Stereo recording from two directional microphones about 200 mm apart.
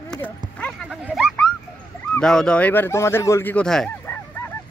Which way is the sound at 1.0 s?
Centre (ahead or behind).